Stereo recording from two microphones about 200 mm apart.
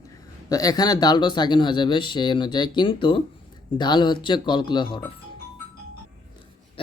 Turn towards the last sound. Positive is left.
turn(degrees=20)  # may be behind; listen again after turning